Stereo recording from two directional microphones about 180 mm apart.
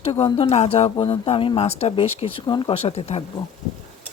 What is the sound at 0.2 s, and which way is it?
Speech, 30° left (ahead or behind).